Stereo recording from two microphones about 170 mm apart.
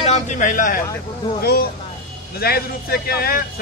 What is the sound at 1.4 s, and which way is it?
Speech, 65° left (ahead or behind).